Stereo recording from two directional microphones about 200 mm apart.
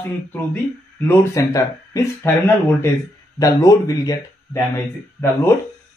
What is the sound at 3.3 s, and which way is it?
Speech, 15° left (ahead or behind).